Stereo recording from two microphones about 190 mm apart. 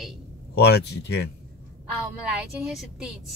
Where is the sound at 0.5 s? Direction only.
60° left (ahead or behind).